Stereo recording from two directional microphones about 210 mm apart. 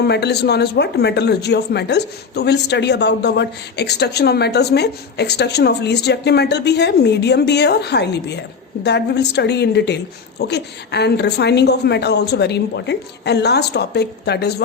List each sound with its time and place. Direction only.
0.0 s speech: 50° left (ahead or behind)